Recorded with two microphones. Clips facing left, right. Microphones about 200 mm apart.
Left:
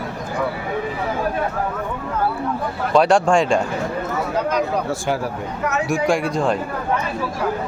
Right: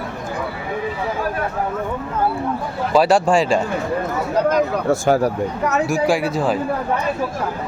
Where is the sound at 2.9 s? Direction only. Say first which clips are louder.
Even; 5° right (ahead or behind).